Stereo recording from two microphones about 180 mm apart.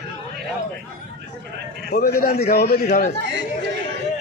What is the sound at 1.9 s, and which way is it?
A man's voice, 55° left (ahead or behind).